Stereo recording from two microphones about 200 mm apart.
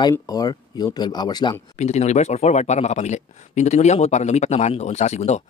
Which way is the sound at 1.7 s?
35° left (ahead or behind).